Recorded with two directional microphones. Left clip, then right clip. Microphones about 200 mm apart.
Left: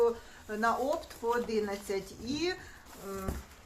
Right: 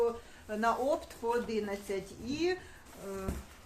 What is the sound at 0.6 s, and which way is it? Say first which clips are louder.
A woman's voice: even; 15° right (ahead or behind).